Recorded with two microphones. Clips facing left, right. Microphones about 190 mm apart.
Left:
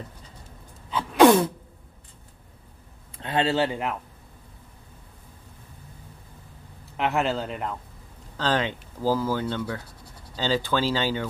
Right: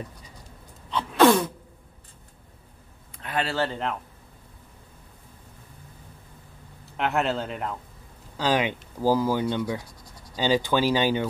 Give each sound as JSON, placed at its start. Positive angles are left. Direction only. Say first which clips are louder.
{"t": 0.8, "sound": "sneeze", "louder": "left 1 dB", "side_deg": 5}
{"t": 1.2, "sound": "sneeze", "louder": "left 2 dB", "side_deg": 20}
{"t": 3.2, "sound": "speech", "louder": "left 4 dB", "side_deg": 25}
{"t": 7.0, "sound": "speech", "louder": "even", "side_deg": 0}
{"t": 8.4, "sound": "speech", "louder": "right 1 dB", "side_deg": -10}